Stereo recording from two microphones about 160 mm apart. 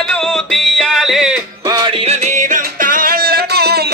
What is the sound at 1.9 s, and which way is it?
Music, 40° right (ahead or behind).